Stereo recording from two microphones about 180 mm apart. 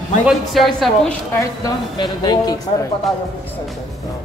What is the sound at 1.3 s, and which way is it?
Speech, 20° left (ahead or behind).